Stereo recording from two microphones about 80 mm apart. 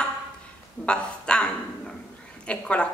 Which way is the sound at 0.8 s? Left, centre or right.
Centre.